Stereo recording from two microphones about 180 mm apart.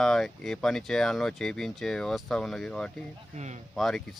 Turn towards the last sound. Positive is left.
turn(degrees=0)  # may be behind; listen again after turning